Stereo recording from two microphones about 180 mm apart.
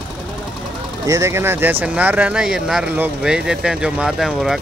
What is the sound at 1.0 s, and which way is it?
Speech, 15° right (ahead or behind).